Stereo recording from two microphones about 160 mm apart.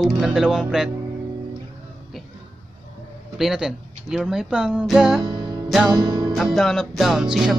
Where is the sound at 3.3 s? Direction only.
5° right (ahead or behind).